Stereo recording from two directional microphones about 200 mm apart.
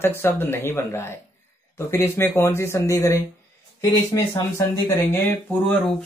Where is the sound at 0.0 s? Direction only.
10° left (ahead or behind).